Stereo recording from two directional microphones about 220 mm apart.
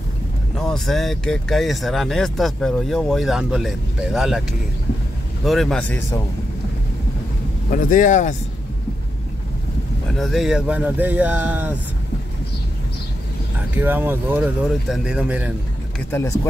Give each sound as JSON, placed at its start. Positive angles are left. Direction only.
{"t": 0.6, "sound": "speech", "side_deg": 0}
{"t": 7.7, "sound": "speech", "side_deg": 35}
{"t": 10.1, "sound": "speech", "side_deg": 0}
{"t": 13.7, "sound": "speech", "side_deg": -10}
{"t": 16.1, "sound": "speech", "side_deg": 10}